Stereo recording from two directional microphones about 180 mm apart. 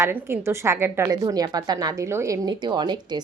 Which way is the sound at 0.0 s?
15° right (ahead or behind).